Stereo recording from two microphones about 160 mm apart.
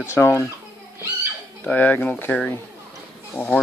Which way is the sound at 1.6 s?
10° left (ahead or behind).